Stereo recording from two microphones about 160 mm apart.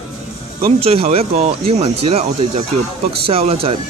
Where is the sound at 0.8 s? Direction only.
40° right (ahead or behind).